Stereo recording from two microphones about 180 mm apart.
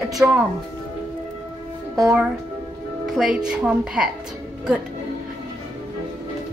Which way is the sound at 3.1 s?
5° right (ahead or behind).